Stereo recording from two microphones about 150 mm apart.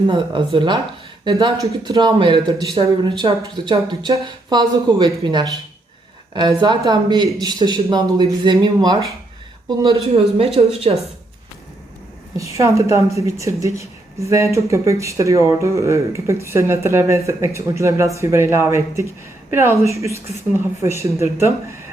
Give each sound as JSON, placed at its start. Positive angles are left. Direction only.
{"t": 0.1, "sound": "speech", "side_deg": -35}
{"t": 9.9, "sound": "speech", "side_deg": -40}
{"t": 12.4, "sound": "speech", "side_deg": -20}